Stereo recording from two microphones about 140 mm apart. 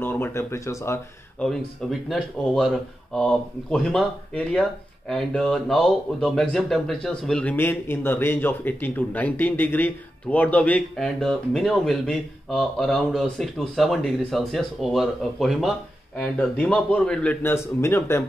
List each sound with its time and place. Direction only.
0.0 s speech: 15° left (ahead or behind)
1.4 s a man's voice: 5° left (ahead or behind)